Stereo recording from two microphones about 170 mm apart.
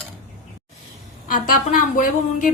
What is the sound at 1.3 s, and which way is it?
A woman's voice, 55° left (ahead or behind).